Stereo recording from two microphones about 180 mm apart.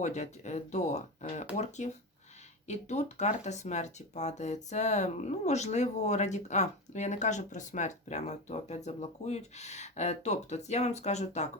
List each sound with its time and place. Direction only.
0.0 s speech: 40° left (ahead or behind)